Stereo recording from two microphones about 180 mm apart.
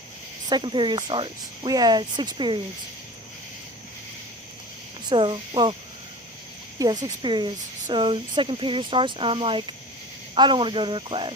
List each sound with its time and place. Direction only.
0.5 s speech: 25° right (ahead or behind)
5.0 s speech: 25° right (ahead or behind)
6.7 s speech: 20° right (ahead or behind)